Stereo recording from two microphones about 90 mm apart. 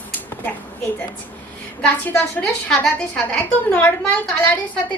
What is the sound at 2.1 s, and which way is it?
A woman's voice, 10° left (ahead or behind).